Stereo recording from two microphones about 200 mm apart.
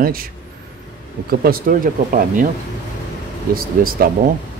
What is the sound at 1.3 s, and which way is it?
Speech, 50° right (ahead or behind).